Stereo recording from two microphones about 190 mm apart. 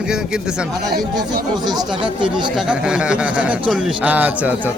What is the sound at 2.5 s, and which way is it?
A man's voice, 5° right (ahead or behind).